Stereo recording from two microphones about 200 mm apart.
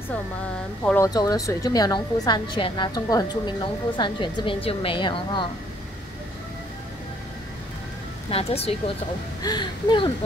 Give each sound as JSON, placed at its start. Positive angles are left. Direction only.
{"t": 0.8, "sound": "a woman's voice", "side_deg": 15}
{"t": 8.3, "sound": "a woman's voice", "side_deg": 30}